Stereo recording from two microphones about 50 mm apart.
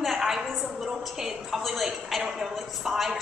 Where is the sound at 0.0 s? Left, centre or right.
Centre.